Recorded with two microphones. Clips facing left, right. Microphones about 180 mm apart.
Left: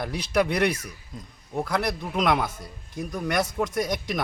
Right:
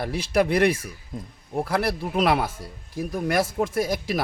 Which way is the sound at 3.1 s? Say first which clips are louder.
Right 3 dB; 30° right (ahead or behind).